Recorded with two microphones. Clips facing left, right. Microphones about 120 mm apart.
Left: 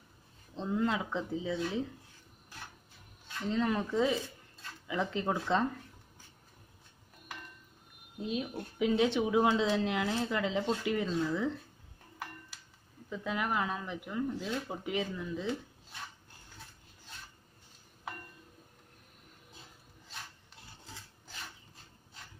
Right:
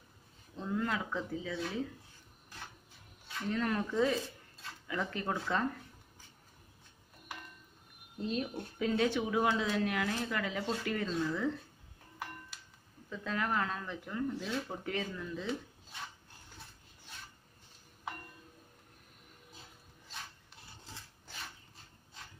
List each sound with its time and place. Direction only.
0.6 s speech: 20° left (ahead or behind)
3.4 s speech: 20° left (ahead or behind)
8.2 s speech: 5° left (ahead or behind)
13.1 s speech: 15° left (ahead or behind)